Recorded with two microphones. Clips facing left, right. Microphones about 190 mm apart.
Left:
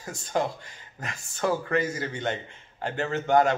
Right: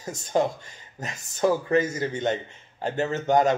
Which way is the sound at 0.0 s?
20° right (ahead or behind).